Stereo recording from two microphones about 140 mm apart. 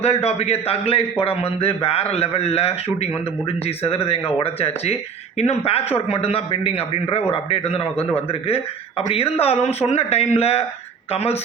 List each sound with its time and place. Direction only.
0.0 s a man's voice: 50° left (ahead or behind)